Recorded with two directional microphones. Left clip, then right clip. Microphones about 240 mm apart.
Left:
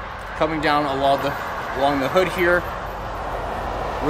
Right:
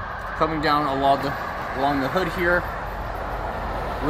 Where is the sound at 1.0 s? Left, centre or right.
Centre.